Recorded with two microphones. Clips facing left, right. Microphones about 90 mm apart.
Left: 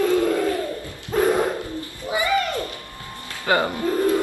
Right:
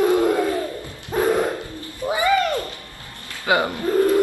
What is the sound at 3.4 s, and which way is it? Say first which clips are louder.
Bird: right 1 dB; 15° right (ahead or behind).